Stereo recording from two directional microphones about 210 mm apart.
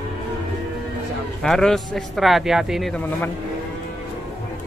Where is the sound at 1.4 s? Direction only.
5° left (ahead or behind).